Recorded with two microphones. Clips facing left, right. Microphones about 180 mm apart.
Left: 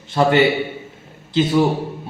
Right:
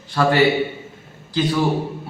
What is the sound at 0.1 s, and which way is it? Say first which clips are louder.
Speech: left 1 dB; 20° left (ahead or behind).